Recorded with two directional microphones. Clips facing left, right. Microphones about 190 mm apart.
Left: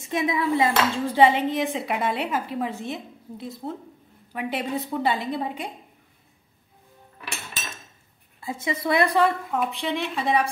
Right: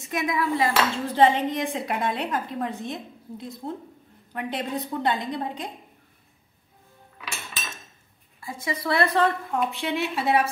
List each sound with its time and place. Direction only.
0.0 s speech: 25° left (ahead or behind)
1.1 s a woman's voice: 10° left (ahead or behind)
8.4 s a woman's voice: 25° left (ahead or behind); by 10.5 s 5° right (ahead or behind)